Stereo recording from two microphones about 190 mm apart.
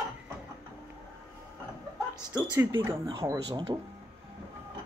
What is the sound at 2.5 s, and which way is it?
Speech, 15° right (ahead or behind).